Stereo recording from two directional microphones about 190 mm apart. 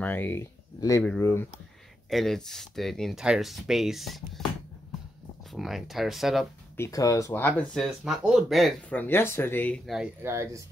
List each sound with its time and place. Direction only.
0.0 s speech: 10° left (ahead or behind)
2.0 s speech: centre (ahead or behind)
5.5 s speech: centre (ahead or behind)
6.8 s speech: 20° left (ahead or behind)
10.2 s speech: 15° right (ahead or behind)